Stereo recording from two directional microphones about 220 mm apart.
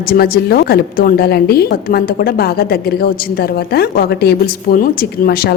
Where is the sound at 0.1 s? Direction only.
45° left (ahead or behind).